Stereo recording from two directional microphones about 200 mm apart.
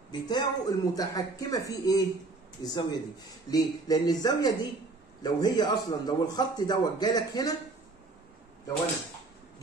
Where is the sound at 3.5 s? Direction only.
20° left (ahead or behind).